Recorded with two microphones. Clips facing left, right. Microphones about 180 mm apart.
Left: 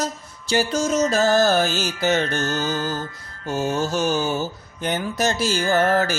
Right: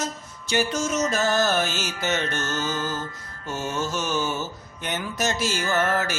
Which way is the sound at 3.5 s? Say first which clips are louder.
Left 5 dB; 35° left (ahead or behind).